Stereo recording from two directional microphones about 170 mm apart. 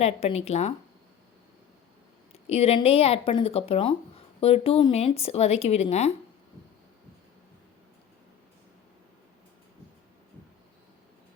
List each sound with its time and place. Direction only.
0.0 s a woman's voice: 40° left (ahead or behind)
2.3 s a woman's voice: 35° left (ahead or behind)